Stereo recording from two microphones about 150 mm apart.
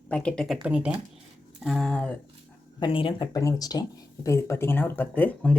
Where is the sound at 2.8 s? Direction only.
35° left (ahead or behind).